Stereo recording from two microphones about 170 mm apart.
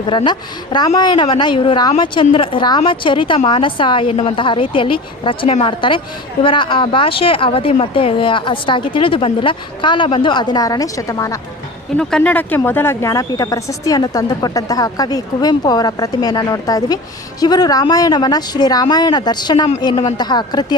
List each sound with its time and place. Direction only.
0.1 s speech: 25° left (ahead or behind)
11.9 s speech: 5° left (ahead or behind); by 20.7 s 25° left (ahead or behind)